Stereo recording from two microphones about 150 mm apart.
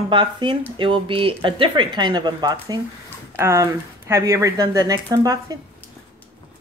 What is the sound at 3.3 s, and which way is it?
Speech, 20° right (ahead or behind).